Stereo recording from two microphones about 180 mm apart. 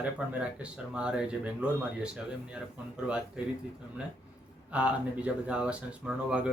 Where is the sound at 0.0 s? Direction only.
5° right (ahead or behind).